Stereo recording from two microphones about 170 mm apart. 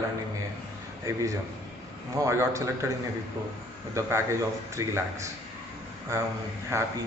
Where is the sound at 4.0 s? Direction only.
20° right (ahead or behind).